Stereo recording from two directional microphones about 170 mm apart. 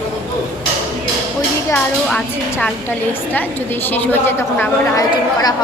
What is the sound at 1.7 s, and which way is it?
A woman's voice, 5° left (ahead or behind).